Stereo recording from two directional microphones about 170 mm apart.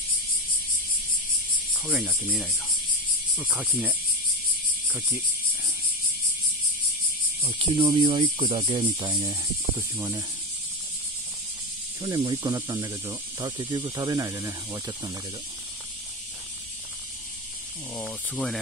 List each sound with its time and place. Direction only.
1.9 s speech: 5° right (ahead or behind)
7.4 s speech: 30° right (ahead or behind)
9.8 s speech: 15° right (ahead or behind)
12.0 s speech: 25° right (ahead or behind)
18.3 s speech: 5° left (ahead or behind)